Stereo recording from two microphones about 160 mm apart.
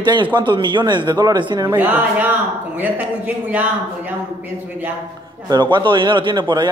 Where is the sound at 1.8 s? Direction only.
10° right (ahead or behind).